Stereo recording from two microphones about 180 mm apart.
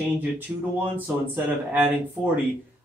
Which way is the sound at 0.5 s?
15° right (ahead or behind).